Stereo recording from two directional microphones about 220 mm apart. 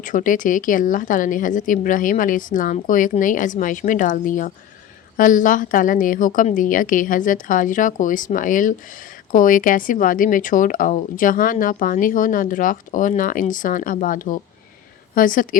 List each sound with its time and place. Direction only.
0.0 s a woman's voice: 35° left (ahead or behind)